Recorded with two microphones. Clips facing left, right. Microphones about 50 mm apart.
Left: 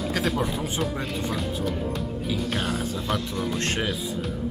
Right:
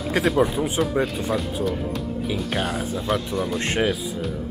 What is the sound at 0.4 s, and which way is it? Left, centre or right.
Speech, centre.